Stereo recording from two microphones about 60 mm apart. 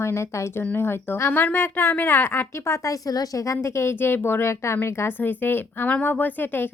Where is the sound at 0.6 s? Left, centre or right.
Left.